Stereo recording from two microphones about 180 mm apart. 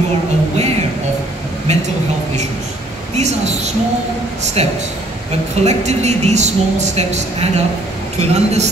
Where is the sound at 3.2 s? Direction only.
40° right (ahead or behind).